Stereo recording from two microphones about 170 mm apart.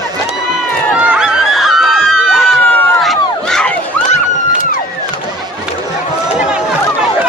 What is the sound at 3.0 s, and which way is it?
Crowd, centre (ahead or behind).